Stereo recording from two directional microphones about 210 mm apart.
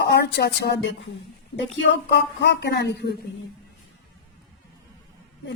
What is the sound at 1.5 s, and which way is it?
Speech, 55° left (ahead or behind).